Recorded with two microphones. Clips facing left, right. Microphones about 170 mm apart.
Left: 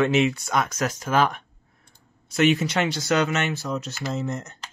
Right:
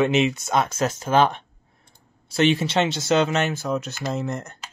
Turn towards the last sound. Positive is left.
turn(degrees=-55)  # may be behind; listen again after turning